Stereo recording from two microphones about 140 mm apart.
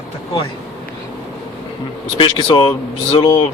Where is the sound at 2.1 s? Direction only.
40° left (ahead or behind).